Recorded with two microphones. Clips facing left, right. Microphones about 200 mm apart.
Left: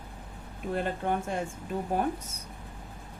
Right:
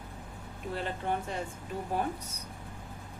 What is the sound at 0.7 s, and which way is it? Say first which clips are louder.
Speech: left 4 dB; 50° left (ahead or behind).